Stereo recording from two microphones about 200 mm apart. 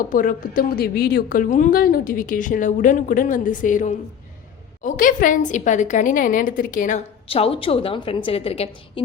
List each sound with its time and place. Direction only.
0.1 s a woman's voice: 45° left (ahead or behind)